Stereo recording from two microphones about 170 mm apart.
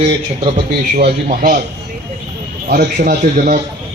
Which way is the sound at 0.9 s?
45° right (ahead or behind).